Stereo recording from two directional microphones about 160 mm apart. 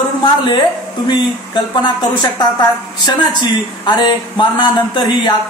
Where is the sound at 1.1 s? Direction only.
30° left (ahead or behind).